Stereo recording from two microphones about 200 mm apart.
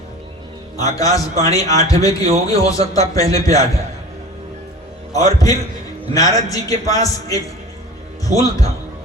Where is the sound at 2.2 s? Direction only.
35° right (ahead or behind).